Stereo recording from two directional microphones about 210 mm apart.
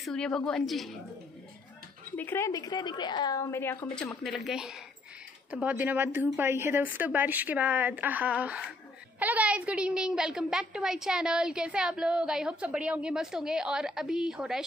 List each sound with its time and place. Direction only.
0.0 s a woman's voice: centre (ahead or behind)
2.1 s a woman's voice: 10° left (ahead or behind)
3.9 s a woman's voice: centre (ahead or behind)